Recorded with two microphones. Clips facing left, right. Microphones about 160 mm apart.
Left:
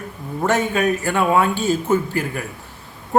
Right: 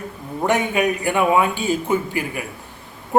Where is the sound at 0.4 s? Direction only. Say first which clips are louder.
Even; 15° right (ahead or behind).